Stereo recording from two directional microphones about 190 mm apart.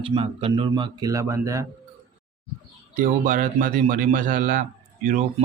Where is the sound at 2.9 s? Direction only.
45° right (ahead or behind).